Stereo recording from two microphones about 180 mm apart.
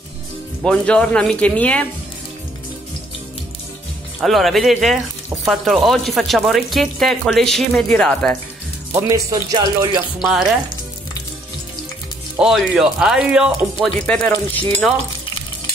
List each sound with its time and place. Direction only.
0.7 s speech: 5° left (ahead or behind)
4.2 s speech: centre (ahead or behind)
8.9 s speech: 20° right (ahead or behind)
12.4 s speech: centre (ahead or behind)
13.9 s speech: 5° left (ahead or behind)